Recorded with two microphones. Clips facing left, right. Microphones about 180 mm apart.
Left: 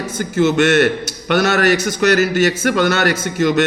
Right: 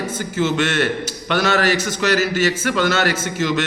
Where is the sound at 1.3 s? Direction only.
55° left (ahead or behind).